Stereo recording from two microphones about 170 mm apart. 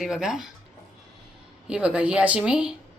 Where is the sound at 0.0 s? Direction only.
5° right (ahead or behind).